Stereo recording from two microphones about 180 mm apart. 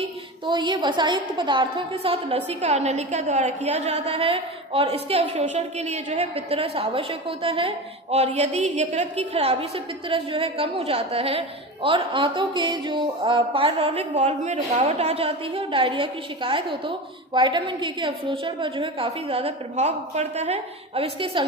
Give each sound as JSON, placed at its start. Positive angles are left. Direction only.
{"t": 0.5, "sound": "a woman's voice", "side_deg": -25}
{"t": 14.2, "sound": "a woman's voice", "side_deg": -40}